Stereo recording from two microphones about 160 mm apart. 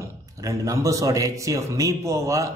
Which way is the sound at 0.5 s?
20° right (ahead or behind).